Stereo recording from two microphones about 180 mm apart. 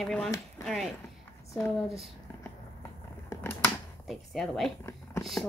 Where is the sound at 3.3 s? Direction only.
15° left (ahead or behind).